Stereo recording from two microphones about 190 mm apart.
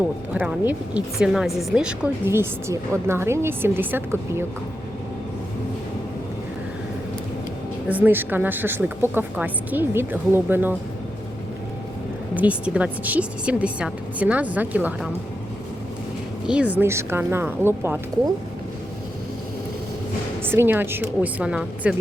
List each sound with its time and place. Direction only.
0.3 s a woman's voice: 10° right (ahead or behind)
7.9 s speech: 10° right (ahead or behind)
12.3 s speech: 5° right (ahead or behind)
16.5 s speech: 5° right (ahead or behind)
20.4 s speech: 10° right (ahead or behind)